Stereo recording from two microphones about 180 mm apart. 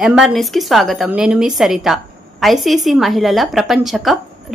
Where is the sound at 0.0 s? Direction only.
5° right (ahead or behind).